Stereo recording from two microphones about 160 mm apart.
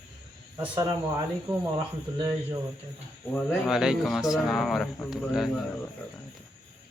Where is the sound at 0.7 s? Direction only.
25° right (ahead or behind).